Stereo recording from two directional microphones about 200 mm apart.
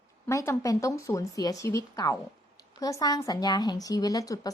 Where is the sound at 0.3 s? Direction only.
15° left (ahead or behind).